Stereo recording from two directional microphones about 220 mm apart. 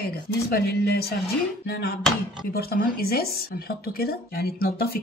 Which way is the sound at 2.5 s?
45° left (ahead or behind).